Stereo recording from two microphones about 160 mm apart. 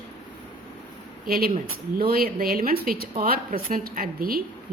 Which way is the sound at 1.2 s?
65° right (ahead or behind).